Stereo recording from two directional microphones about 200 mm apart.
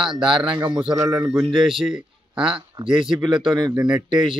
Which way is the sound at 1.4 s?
Centre (ahead or behind).